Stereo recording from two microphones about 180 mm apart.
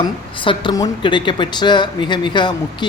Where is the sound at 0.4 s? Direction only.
25° left (ahead or behind).